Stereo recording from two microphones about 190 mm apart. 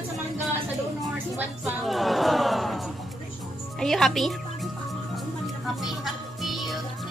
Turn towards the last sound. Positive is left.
turn(degrees=0)  # may be behind; listen again after turning